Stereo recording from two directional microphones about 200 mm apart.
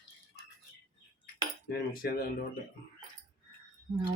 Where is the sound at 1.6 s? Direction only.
50° left (ahead or behind).